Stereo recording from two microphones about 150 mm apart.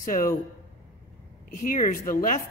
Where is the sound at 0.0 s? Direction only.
65° left (ahead or behind).